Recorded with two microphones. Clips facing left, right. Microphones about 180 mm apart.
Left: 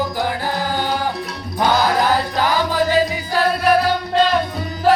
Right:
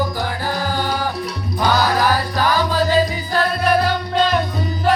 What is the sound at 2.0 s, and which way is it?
Music, 20° left (ahead or behind).